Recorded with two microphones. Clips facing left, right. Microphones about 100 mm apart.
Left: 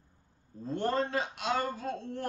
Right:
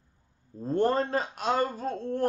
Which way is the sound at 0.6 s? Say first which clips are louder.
Right 5 dB; 40° right (ahead or behind).